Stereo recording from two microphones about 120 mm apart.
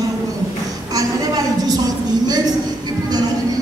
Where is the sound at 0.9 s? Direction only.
30° right (ahead or behind).